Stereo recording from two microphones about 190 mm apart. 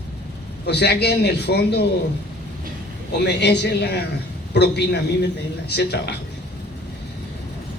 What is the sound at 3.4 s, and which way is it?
A man's voice, 60° left (ahead or behind).